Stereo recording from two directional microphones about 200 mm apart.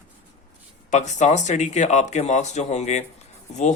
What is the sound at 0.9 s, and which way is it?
Speech, 35° left (ahead or behind).